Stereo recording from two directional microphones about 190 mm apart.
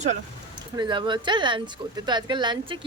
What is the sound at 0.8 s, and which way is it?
Speech, 25° right (ahead or behind).